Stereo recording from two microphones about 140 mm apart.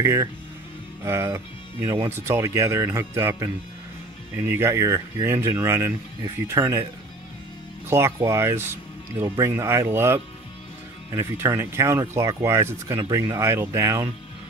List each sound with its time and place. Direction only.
0.0 s speech: 20° right (ahead or behind)
7.9 s speech: 20° right (ahead or behind)